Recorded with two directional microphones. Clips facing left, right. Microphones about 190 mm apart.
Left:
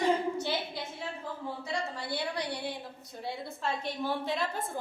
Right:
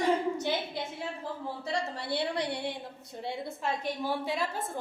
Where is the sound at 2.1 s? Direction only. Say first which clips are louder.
Right 5 dB; 25° right (ahead or behind).